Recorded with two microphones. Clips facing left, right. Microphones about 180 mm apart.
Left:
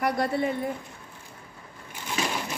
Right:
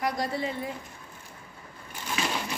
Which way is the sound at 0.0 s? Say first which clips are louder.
Left 4 dB; 60° left (ahead or behind).